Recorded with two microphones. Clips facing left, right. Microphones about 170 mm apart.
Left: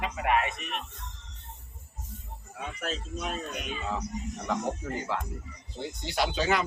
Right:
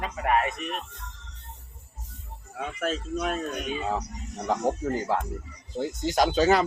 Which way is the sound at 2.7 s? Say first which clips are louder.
Right 7 dB; 50° right (ahead or behind).